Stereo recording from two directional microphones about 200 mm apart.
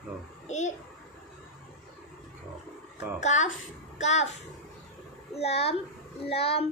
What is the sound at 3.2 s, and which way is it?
A woman's voice, 35° left (ahead or behind).